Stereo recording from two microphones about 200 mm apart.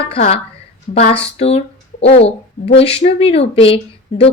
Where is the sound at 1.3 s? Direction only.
30° left (ahead or behind).